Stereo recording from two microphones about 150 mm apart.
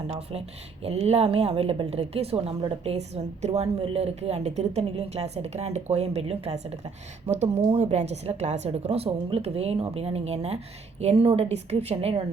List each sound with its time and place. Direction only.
0.1 s speech: 45° right (ahead or behind)